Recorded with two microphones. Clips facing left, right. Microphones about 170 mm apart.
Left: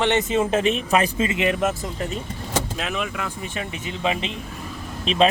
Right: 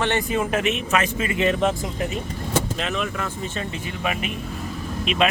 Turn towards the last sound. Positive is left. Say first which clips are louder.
# left 2 dB
turn(degrees=30)  # may be behind; listen again after turning